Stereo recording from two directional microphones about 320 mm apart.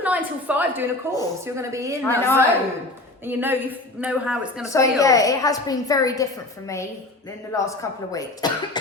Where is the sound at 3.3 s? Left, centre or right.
Centre.